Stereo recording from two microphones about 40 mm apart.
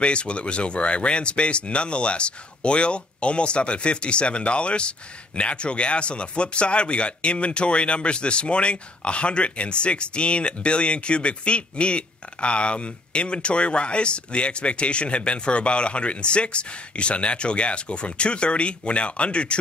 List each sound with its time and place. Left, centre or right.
0.0 s speech: left